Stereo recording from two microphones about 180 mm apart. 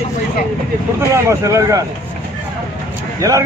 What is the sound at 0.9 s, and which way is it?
Speech, 15° right (ahead or behind).